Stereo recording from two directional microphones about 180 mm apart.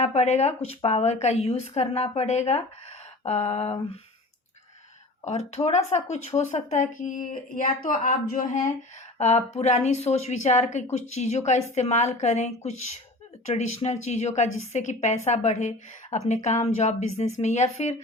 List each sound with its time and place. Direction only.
0.0 s a woman's voice: 40° left (ahead or behind)
5.2 s a woman's voice: 35° left (ahead or behind)
9.1 s a woman's voice: 40° left (ahead or behind)